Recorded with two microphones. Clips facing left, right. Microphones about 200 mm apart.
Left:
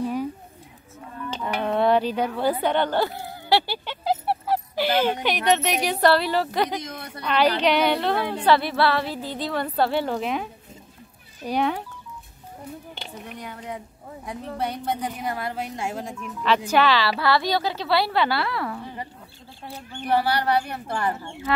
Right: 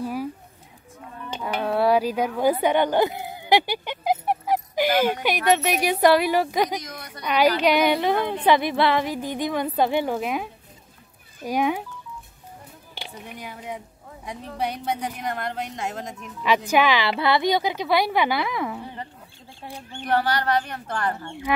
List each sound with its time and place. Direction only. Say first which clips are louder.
0.0 s a sound: left 2 dB; 5° right (ahead or behind)
1.3 s a sound: even; 5° right (ahead or behind)
5.2 s a woman's voice: right 1 dB; 10° right (ahead or behind)
6.8 s a woman's voice: left 3 dB; 25° left (ahead or behind)
7.2 s a woman's voice: right 1 dB; 10° right (ahead or behind)
13.0 s a woman's voice: right 3 dB; 5° right (ahead or behind)
16.7 s a woman's voice: even; 15° right (ahead or behind)
20.0 s a woman's voice: left 1 dB; 10° left (ahead or behind)
21.5 s a woman's voice: even; 15° right (ahead or behind)